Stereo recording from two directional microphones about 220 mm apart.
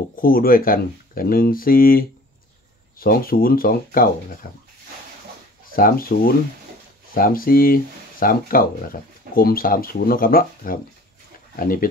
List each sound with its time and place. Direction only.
0.1 s speech: 40° left (ahead or behind)
5.7 s speech: 40° left (ahead or behind)